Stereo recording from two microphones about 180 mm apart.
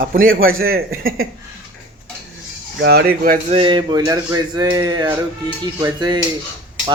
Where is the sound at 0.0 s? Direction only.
50° right (ahead or behind).